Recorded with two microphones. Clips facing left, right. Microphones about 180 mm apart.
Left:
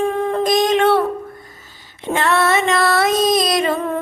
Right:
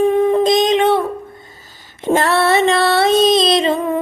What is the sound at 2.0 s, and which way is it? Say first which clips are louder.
Female singing: right 3 dB; 40° right (ahead or behind).